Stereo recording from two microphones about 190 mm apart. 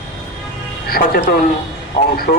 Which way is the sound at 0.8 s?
50° left (ahead or behind).